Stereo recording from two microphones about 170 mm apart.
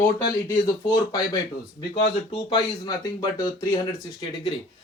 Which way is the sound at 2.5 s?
25° left (ahead or behind).